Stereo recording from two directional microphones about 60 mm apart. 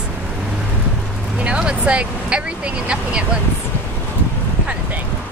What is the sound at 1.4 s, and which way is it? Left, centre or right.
Speech, centre.